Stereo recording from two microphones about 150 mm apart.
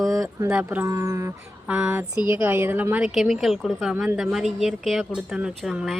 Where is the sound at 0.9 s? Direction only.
20° right (ahead or behind).